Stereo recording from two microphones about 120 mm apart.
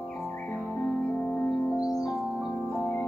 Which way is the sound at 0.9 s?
10° left (ahead or behind).